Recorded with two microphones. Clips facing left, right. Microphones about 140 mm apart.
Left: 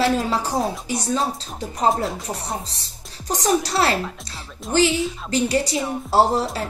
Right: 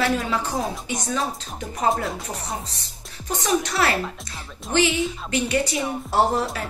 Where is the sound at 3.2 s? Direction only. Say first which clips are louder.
Left 3 dB; 35° left (ahead or behind).